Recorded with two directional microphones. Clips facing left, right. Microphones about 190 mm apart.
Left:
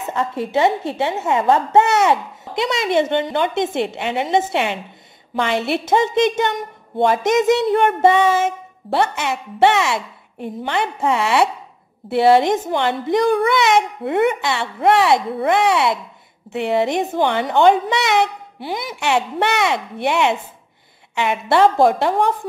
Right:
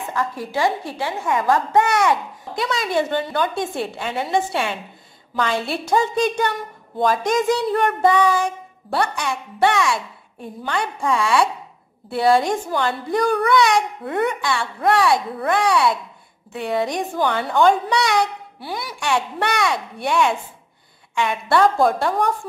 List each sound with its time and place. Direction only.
0.0 s a woman's voice: 25° left (ahead or behind)